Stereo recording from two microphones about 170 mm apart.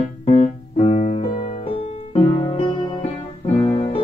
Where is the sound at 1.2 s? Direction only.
25° left (ahead or behind).